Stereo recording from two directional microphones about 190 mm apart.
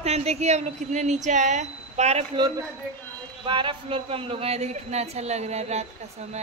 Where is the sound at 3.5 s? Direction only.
25° right (ahead or behind).